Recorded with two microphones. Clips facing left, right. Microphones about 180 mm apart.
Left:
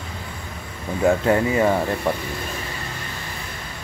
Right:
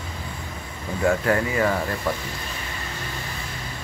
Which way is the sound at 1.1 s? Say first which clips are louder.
Left 3 dB; 20° left (ahead or behind).